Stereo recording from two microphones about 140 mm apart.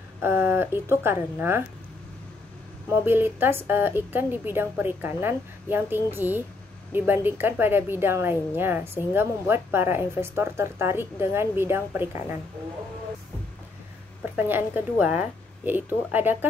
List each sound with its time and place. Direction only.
0.2 s a woman's voice: 15° right (ahead or behind)
3.1 s a woman's voice: 15° right (ahead or behind)
14.3 s a woman's voice: 10° right (ahead or behind)